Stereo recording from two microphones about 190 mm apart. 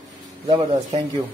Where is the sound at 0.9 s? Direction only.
30° right (ahead or behind).